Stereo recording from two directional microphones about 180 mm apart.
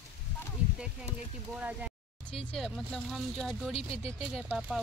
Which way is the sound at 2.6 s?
Centre (ahead or behind).